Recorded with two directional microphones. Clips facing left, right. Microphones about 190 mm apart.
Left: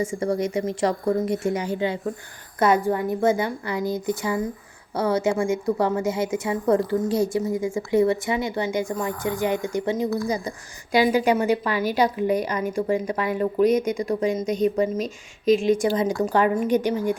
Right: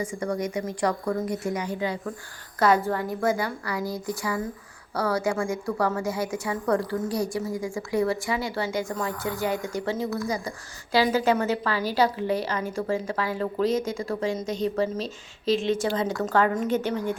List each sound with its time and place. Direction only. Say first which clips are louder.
0.0 s a woman's voice: left 4 dB; 25° left (ahead or behind)